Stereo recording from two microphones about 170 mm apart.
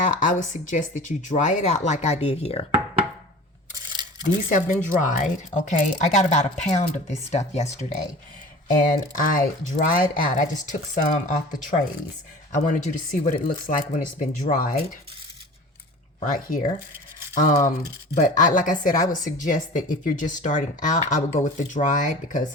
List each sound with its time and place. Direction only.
0.0 s speech: 50° left (ahead or behind)
4.4 s speech: 50° left (ahead or behind)
8.6 s speech: 50° left (ahead or behind)
12.6 s speech: 45° left (ahead or behind)
16.2 s speech: 50° left (ahead or behind)